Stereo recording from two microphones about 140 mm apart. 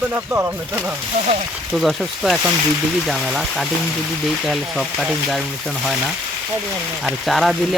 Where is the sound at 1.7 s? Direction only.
Centre (ahead or behind).